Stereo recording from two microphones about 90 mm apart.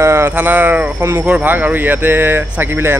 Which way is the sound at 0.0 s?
30° right (ahead or behind).